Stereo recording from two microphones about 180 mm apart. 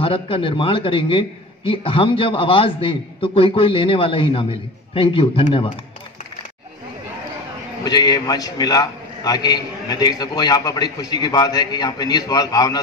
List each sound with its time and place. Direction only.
0.0 s a man's voice: 30° left (ahead or behind)
7.8 s a man's voice: 20° left (ahead or behind)